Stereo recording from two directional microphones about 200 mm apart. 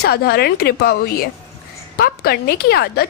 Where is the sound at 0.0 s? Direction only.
50° left (ahead or behind).